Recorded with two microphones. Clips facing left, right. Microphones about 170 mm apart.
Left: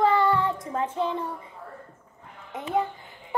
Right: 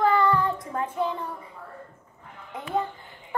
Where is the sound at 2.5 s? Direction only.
20° left (ahead or behind).